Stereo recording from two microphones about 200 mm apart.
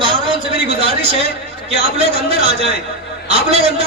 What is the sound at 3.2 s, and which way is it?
Speech, 30° right (ahead or behind).